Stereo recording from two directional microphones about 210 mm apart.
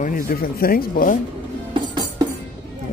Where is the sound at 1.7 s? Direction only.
20° right (ahead or behind).